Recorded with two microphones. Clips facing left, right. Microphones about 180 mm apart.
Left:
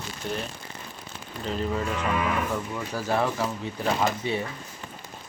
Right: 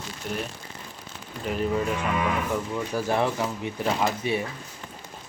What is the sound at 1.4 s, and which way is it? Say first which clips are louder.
Speech: right 2 dB; 15° right (ahead or behind).